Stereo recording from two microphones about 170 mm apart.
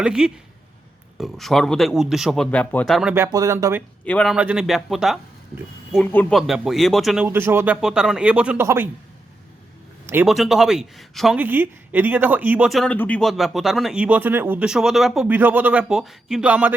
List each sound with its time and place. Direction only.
0.0 s speech: 5° right (ahead or behind)
3.3 s speech: 20° right (ahead or behind)
4.0 s speech: 5° left (ahead or behind)
4.4 s speech: 5° right (ahead or behind)
7.3 s speech: 15° right (ahead or behind)
10.2 s speech: centre (ahead or behind)
11.3 s speech: 10° right (ahead or behind)